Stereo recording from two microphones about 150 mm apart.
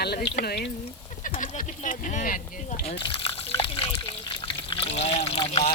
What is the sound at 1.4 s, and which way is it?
Speech, 60° left (ahead or behind).